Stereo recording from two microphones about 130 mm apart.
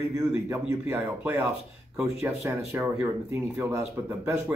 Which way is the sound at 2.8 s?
20° right (ahead or behind).